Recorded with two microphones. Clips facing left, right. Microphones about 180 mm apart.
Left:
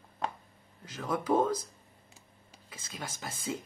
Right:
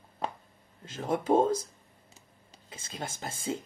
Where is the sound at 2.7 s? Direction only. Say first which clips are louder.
Right 3 dB; 25° right (ahead or behind).